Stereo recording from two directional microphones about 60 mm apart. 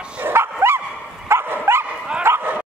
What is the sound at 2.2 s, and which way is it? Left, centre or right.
Bow-wow, right.